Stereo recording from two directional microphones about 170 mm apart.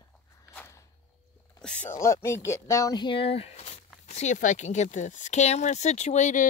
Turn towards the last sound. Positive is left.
turn(degrees=45)  # may be behind; listen again after turning